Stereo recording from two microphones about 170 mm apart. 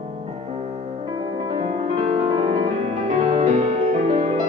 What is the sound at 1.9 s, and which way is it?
Music, 35° right (ahead or behind).